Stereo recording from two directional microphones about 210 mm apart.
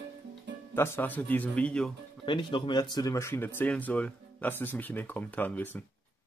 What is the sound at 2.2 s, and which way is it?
Speech, 25° left (ahead or behind).